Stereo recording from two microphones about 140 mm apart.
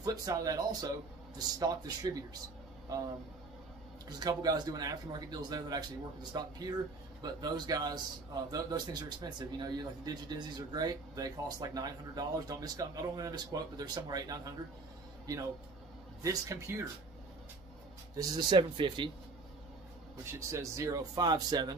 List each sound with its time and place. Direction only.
0.0 s a man's voice: 25° right (ahead or behind)
4.2 s a man's voice: 25° right (ahead or behind)
16.2 s a man's voice: 20° right (ahead or behind)
18.1 s speech: 30° right (ahead or behind)
20.2 s a man's voice: 20° right (ahead or behind)